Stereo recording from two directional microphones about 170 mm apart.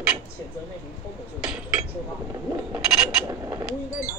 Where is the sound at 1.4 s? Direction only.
5° right (ahead or behind).